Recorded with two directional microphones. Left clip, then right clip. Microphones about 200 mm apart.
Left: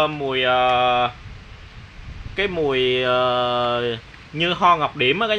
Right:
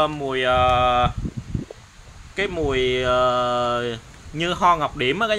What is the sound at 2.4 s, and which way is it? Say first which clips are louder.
Speech: left 2 dB; 10° left (ahead or behind).